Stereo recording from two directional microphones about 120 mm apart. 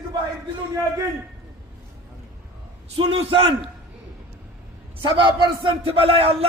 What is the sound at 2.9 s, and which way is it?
Speech, 50° right (ahead or behind).